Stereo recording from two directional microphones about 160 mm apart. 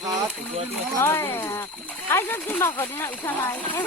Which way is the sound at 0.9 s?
15° left (ahead or behind).